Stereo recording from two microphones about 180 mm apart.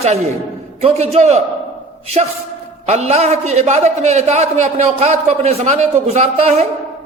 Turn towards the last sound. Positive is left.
turn(degrees=-35)  # may be behind; listen again after turning